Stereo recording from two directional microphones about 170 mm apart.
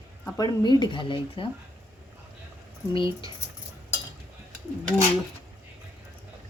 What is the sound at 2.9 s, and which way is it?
Speech, 30° left (ahead or behind).